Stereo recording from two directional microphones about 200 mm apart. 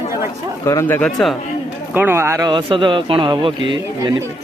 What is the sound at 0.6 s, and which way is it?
Speech, 10° left (ahead or behind).